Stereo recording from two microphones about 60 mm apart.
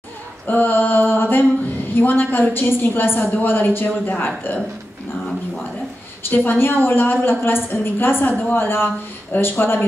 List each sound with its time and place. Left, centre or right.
0.5 s a sound: left
2.0 s a woman's voice: left
6.2 s a woman's voice: left